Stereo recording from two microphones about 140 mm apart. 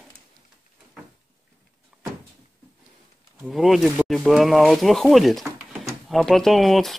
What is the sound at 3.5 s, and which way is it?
Speech, centre (ahead or behind).